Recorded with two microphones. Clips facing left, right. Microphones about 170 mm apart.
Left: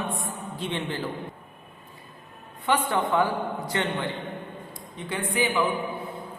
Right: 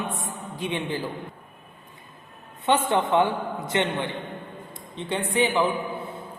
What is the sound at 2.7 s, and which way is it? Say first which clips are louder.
A man's voice: right 3 dB; 25° right (ahead or behind).